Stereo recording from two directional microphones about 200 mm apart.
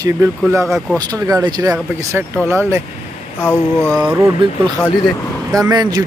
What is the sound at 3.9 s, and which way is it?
Speech, 10° right (ahead or behind).